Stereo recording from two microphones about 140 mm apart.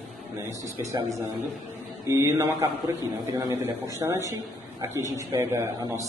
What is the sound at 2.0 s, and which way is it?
A man's voice, 20° right (ahead or behind).